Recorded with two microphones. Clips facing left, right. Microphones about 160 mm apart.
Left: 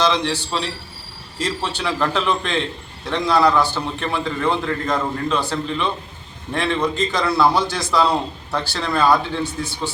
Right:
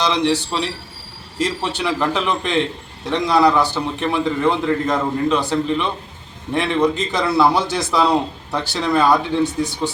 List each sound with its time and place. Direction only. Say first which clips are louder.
0.0 s a man's voice: right 2 dB; 20° right (ahead or behind)